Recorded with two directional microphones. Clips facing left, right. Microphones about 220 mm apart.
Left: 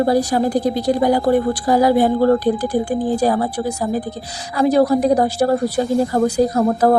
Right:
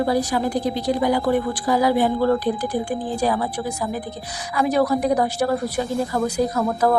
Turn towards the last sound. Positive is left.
turn(degrees=35)  # may be behind; listen again after turning